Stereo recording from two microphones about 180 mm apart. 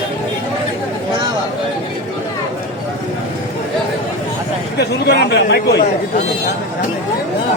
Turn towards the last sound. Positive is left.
turn(degrees=65)  # may be behind; listen again after turning